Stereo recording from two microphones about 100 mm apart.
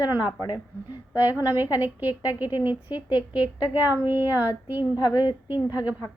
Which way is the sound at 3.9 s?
20° right (ahead or behind).